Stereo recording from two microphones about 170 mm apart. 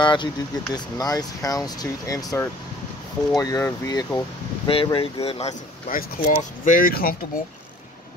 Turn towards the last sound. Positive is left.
turn(degrees=60)  # may be behind; listen again after turning